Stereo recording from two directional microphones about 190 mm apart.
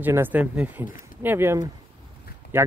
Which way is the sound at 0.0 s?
10° right (ahead or behind).